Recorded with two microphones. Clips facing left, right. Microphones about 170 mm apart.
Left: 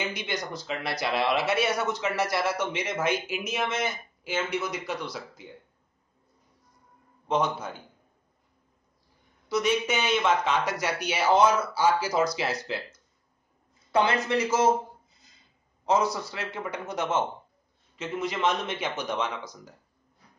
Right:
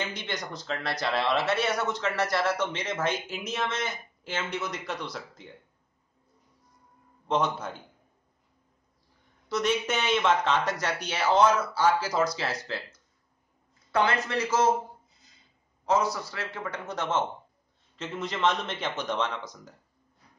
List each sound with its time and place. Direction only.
0.0 s speech: 10° left (ahead or behind)
7.2 s a man's voice: 5° left (ahead or behind)
9.5 s speech: 5° left (ahead or behind)
13.9 s speech: 15° left (ahead or behind)
15.8 s speech: 20° left (ahead or behind)
18.0 s speech: 5° left (ahead or behind)